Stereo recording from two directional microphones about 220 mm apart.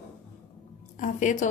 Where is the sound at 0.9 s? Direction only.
35° left (ahead or behind).